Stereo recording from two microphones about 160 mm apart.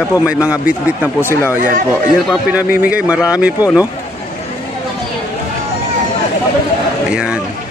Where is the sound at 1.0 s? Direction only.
15° left (ahead or behind).